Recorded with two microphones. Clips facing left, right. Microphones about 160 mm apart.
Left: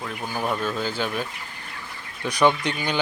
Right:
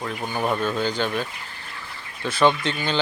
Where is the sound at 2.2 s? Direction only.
15° left (ahead or behind).